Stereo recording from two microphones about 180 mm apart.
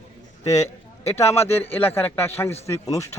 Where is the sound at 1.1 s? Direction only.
15° left (ahead or behind).